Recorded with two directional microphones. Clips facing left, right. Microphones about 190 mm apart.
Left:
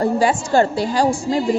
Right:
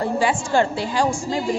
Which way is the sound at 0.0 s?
40° left (ahead or behind).